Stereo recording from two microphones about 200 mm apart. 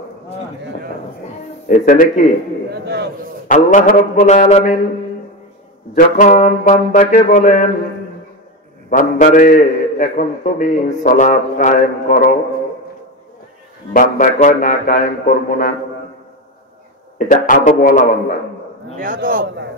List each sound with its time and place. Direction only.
1.7 s a man's voice: 40° left (ahead or behind)
2.7 s a man's voice: 55° right (ahead or behind)
3.4 s a man's voice: 40° left (ahead or behind)
5.9 s a man's voice: 40° left (ahead or behind)
8.9 s a man's voice: 40° left (ahead or behind)
13.9 s a man's voice: 40° left (ahead or behind)
17.3 s a man's voice: 40° left (ahead or behind)
18.9 s a man's voice: 45° right (ahead or behind)